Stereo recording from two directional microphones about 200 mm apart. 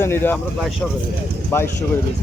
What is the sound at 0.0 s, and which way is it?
Speech, 10° left (ahead or behind).